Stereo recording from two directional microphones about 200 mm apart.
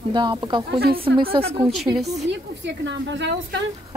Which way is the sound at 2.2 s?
60° right (ahead or behind).